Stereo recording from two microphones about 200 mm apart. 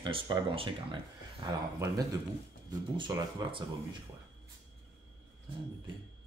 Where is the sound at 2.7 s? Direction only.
20° right (ahead or behind).